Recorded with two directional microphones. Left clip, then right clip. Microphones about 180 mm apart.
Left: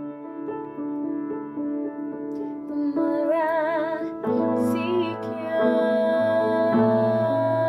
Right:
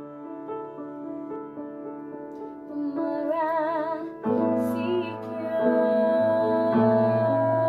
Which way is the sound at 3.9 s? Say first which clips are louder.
Left 2 dB; 15° left (ahead or behind).